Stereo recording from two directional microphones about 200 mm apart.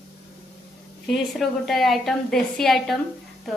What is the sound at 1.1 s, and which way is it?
A woman's voice, centre (ahead or behind).